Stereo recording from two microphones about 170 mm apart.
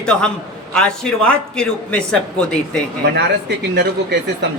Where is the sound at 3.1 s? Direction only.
75° right (ahead or behind).